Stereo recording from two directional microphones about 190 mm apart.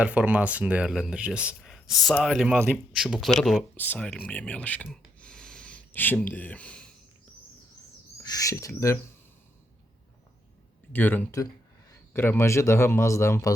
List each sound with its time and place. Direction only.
0.0 s speech: 5° right (ahead or behind)
8.2 s speech: 20° left (ahead or behind)
10.9 s speech: 10° left (ahead or behind)